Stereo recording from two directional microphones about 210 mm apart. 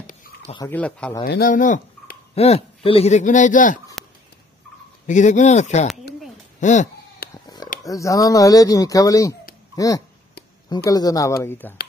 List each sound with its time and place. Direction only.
0.7 s speech: 5° left (ahead or behind)
1.2 s speech: 45° left (ahead or behind)
5.0 s speech: 35° left (ahead or behind)
6.6 s a sound: 35° left (ahead or behind)
7.4 s a sound: 20° left (ahead or behind)
7.8 s speech: 15° left (ahead or behind)